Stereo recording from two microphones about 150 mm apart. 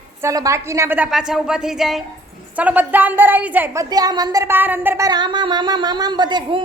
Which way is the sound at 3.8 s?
25° right (ahead or behind).